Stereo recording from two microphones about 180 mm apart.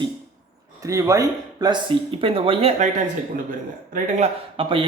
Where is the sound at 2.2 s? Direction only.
30° right (ahead or behind).